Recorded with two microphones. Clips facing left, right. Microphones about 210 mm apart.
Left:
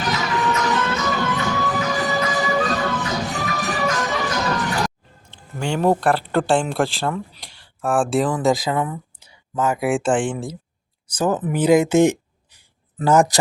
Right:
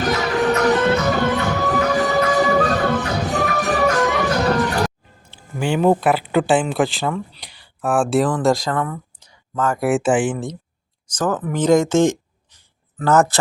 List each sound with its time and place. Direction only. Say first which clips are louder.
0.0 s music: right 4 dB; 60° right (ahead or behind)
5.3 s speech: right 3 dB; 5° right (ahead or behind)
11.1 s speech: left 1 dB; 15° left (ahead or behind)
13.1 s speech: even; 15° left (ahead or behind)